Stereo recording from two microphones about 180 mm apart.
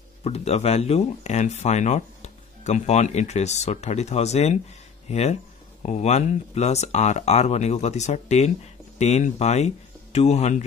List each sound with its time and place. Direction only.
0.2 s speech: 35° left (ahead or behind)